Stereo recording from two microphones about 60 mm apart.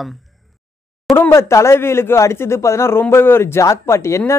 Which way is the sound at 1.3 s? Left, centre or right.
Left.